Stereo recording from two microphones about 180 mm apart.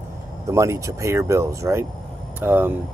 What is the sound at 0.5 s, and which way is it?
Speech, 15° right (ahead or behind).